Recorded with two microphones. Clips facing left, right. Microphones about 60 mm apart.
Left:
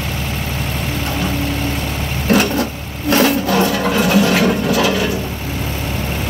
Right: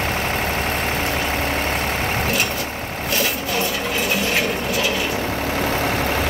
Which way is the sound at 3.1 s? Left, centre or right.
Left.